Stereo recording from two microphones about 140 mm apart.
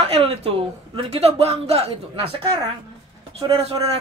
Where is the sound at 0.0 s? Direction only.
45° right (ahead or behind).